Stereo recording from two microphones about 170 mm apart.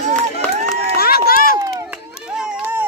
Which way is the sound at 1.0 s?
65° left (ahead or behind).